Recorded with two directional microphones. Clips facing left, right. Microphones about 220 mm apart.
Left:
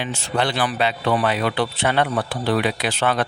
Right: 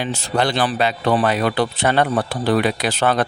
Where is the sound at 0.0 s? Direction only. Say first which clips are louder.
Right 3 dB; 40° right (ahead or behind).